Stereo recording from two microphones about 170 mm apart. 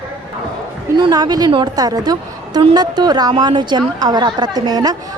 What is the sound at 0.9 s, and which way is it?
A woman's voice, 25° right (ahead or behind).